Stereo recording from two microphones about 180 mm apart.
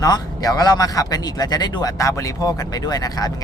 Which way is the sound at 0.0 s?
20° left (ahead or behind).